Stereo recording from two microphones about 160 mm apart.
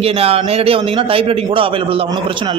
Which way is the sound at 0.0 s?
40° right (ahead or behind).